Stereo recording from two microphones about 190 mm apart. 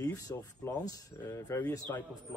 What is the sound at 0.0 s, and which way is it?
Speech, 20° left (ahead or behind).